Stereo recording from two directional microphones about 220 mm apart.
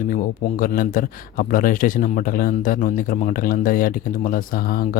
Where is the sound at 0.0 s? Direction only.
35° left (ahead or behind).